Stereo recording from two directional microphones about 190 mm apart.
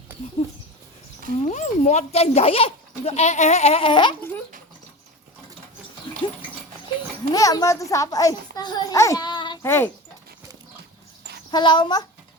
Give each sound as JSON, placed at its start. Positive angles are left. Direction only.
{"t": 0.4, "sound": "speech", "side_deg": 30}
{"t": 6.1, "sound": "dog", "side_deg": 25}
{"t": 7.3, "sound": "a child's voice", "side_deg": 15}
{"t": 9.6, "sound": "speech", "side_deg": 10}
{"t": 11.5, "sound": "a child's voice", "side_deg": 25}